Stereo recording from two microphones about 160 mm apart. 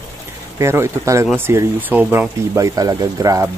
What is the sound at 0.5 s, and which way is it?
Speech, 15° right (ahead or behind).